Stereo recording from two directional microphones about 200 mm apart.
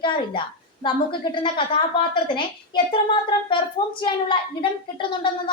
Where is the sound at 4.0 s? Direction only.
25° left (ahead or behind).